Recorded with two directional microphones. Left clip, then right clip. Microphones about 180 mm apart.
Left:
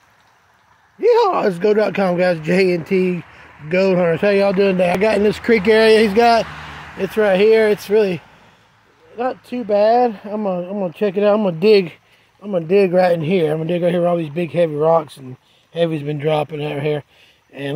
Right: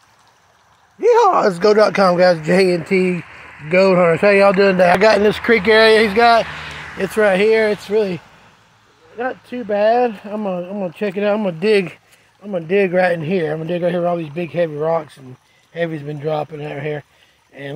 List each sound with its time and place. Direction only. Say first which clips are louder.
1.0 s speech: right 2 dB; 5° left (ahead or behind)
5.0 s speech: right 3 dB; 25° left (ahead or behind); by 6.3 s 45° left (ahead or behind)
7.0 s speech: even; 10° left (ahead or behind); by 17.7 s 55° left (ahead or behind)